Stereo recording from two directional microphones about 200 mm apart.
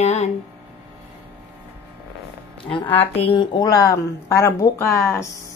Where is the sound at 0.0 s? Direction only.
35° left (ahead or behind).